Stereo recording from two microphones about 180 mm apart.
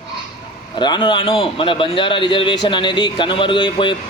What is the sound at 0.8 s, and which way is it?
Speech, 25° left (ahead or behind).